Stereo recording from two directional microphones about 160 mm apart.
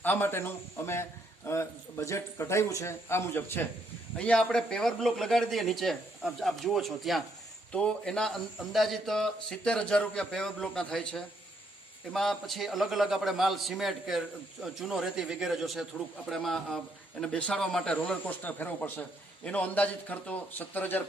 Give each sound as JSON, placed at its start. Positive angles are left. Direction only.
{"t": 0.0, "sound": "a man's voice", "side_deg": 15}